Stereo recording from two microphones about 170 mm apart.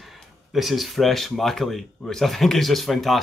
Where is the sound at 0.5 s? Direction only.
Centre (ahead or behind).